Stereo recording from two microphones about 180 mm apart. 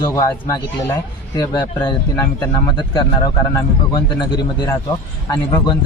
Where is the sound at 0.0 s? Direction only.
20° left (ahead or behind).